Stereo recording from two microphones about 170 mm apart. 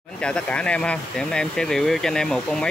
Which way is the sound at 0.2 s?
5° left (ahead or behind).